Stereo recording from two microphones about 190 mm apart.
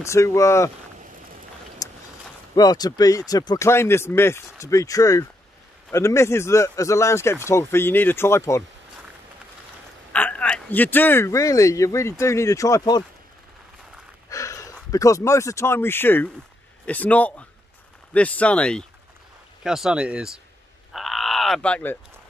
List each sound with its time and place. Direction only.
0.0 s a man's voice: 15° left (ahead or behind)
1.8 s a sound: 20° left (ahead or behind)
2.5 s a man's voice: 20° left (ahead or behind)
10.1 s a man's voice: 5° left (ahead or behind)
14.3 s a man's voice: 15° left (ahead or behind); by 20.3 s 5° right (ahead or behind)
20.9 s frog: centre (ahead or behind)